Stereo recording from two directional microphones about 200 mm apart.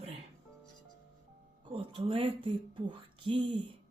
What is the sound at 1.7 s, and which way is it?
Speech, 25° right (ahead or behind).